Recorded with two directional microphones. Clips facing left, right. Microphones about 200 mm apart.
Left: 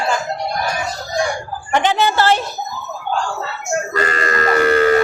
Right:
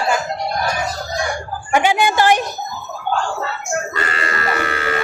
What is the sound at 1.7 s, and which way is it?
Speech, 10° right (ahead or behind).